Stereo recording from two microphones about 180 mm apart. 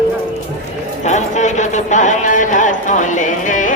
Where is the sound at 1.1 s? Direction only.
40° left (ahead or behind).